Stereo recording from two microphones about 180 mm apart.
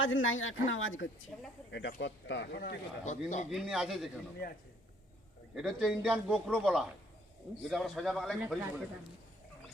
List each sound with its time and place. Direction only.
0.0 s speech: 90° left; by 3.4 s 40° left (ahead or behind)
3.5 s a man's voice: centre (ahead or behind)
5.5 s a man's voice: centre (ahead or behind)